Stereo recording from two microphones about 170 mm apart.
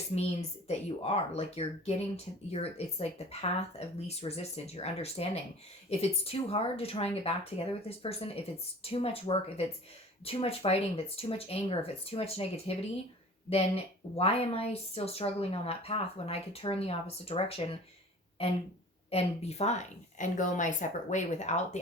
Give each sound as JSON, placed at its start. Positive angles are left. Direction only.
{"t": 0.1, "sound": "speech", "side_deg": 30}
{"t": 19.1, "sound": "speech", "side_deg": 40}